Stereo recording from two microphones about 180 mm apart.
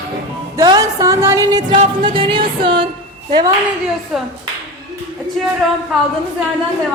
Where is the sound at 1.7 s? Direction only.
30° right (ahead or behind).